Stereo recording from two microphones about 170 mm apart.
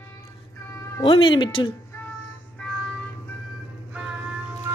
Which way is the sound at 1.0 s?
30° left (ahead or behind).